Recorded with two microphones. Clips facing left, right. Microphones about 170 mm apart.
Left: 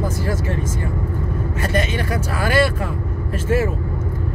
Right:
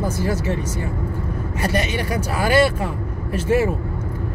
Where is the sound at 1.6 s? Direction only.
15° right (ahead or behind).